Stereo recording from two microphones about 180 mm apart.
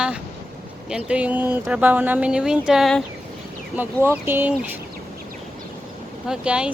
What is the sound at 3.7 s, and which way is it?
Speech, 10° right (ahead or behind).